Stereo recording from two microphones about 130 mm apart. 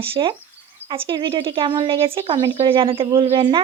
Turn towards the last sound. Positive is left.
turn(degrees=-45)  # may be behind; listen again after turning